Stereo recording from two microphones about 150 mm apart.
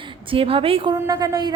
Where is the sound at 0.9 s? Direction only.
25° right (ahead or behind).